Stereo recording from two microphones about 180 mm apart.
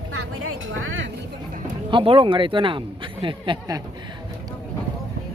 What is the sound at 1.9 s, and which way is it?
Speech, 30° right (ahead or behind).